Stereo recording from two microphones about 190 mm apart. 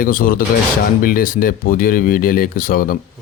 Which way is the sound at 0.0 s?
50° left (ahead or behind).